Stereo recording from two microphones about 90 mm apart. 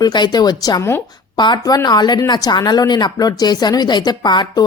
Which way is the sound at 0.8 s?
25° left (ahead or behind).